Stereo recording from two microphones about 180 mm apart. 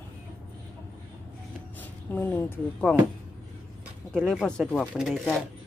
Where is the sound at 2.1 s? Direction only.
10° left (ahead or behind).